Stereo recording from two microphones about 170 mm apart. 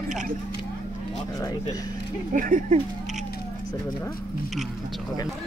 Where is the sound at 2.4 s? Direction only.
50° right (ahead or behind).